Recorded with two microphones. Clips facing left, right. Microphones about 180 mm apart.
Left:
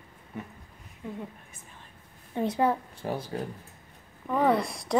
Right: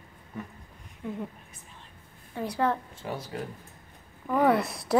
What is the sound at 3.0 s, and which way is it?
Speech, 35° left (ahead or behind).